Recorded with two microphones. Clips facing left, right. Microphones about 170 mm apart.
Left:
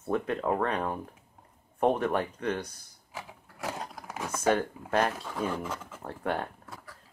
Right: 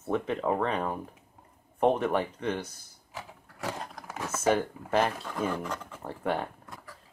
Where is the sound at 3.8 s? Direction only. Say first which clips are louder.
Even; 5° left (ahead or behind).